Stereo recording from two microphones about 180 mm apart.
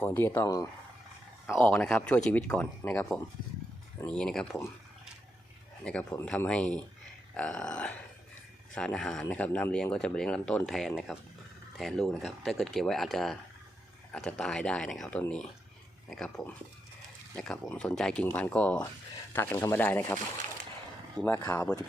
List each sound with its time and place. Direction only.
0.0 s speech: 10° left (ahead or behind)
1.5 s speech: 5° left (ahead or behind)
5.8 s speech: 5° left (ahead or behind)
21.2 s speech: 15° left (ahead or behind)